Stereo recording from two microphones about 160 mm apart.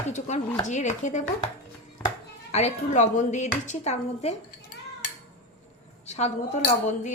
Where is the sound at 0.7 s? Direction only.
50° left (ahead or behind).